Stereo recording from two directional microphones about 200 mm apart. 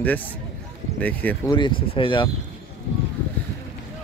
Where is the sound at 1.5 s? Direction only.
25° left (ahead or behind).